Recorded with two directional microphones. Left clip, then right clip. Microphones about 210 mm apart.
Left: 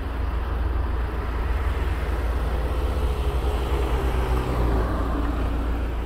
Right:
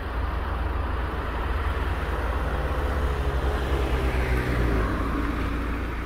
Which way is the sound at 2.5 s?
35° left (ahead or behind).